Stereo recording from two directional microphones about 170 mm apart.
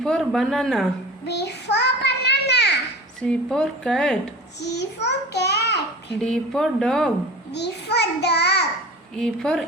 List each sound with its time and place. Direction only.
0.0 s a woman's voice: centre (ahead or behind)
1.3 s a sound: 80° left
3.2 s a woman's voice: 5° left (ahead or behind)
4.6 s a child's voice: 85° left
6.1 s a woman's voice: 5° left (ahead or behind)
7.5 s a child's voice: 80° left
9.1 s a woman's voice: 5° left (ahead or behind)